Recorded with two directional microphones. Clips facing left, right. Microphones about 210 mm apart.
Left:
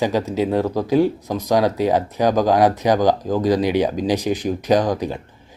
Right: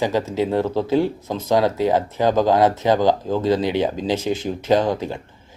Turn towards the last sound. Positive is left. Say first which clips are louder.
# left 1 dB
turn(degrees=15)  # may be behind; listen again after turning